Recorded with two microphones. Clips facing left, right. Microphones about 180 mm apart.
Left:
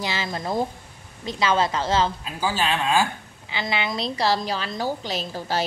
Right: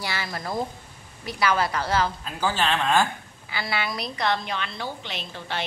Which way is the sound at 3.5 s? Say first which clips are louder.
Left 3 dB; 20° left (ahead or behind).